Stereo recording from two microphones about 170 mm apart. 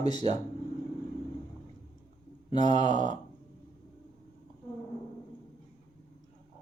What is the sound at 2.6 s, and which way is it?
Speech, 45° right (ahead or behind).